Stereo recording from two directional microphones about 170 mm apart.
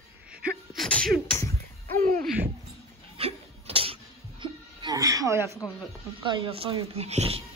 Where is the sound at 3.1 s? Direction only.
35° right (ahead or behind); by 5.5 s 15° right (ahead or behind).